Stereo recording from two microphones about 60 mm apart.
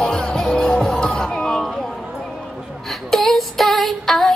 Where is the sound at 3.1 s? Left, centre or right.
Centre.